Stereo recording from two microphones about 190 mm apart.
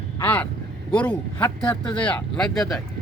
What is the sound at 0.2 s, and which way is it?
A man's voice, 10° left (ahead or behind).